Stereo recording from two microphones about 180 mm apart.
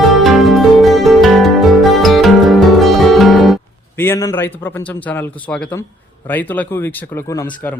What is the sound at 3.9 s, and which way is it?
A man's voice, 10° left (ahead or behind).